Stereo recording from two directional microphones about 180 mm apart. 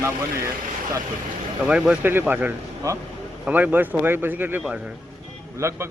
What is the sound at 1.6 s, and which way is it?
Speech, 5° right (ahead or behind).